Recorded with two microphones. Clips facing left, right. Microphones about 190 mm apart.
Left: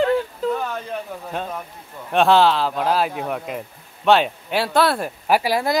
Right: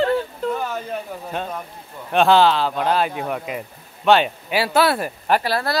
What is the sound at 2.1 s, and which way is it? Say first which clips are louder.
Speech: even; centre (ahead or behind).